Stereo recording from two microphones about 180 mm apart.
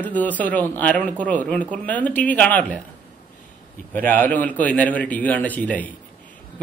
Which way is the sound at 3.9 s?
10° left (ahead or behind).